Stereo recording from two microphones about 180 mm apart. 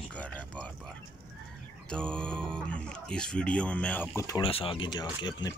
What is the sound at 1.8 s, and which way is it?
Speech, 5° left (ahead or behind).